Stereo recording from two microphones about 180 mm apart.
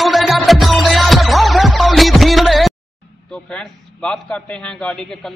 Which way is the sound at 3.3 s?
5° left (ahead or behind).